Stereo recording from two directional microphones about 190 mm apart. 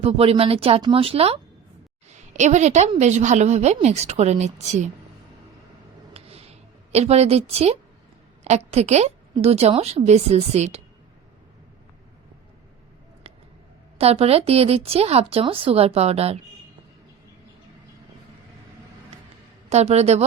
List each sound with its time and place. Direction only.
0.0 s a woman's voice: 30° right (ahead or behind)
6.1 s a sound: 30° right (ahead or behind)
8.4 s a woman's voice: 35° right (ahead or behind)
14.0 s a woman's voice: 30° right (ahead or behind)
19.7 s a woman's voice: 35° right (ahead or behind)